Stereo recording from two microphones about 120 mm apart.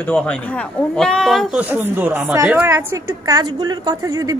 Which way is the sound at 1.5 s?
15° right (ahead or behind).